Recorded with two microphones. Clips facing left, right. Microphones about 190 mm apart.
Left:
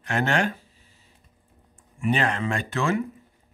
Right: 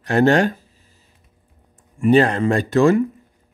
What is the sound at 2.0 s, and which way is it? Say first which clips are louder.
A man's voice: right 10 dB; 35° right (ahead or behind).